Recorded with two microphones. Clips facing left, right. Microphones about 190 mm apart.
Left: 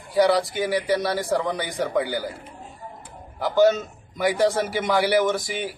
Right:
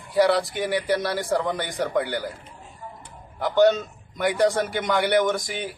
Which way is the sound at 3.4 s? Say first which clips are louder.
Even; centre (ahead or behind).